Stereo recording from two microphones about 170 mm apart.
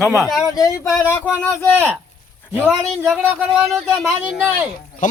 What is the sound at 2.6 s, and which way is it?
Speech, 10° right (ahead or behind).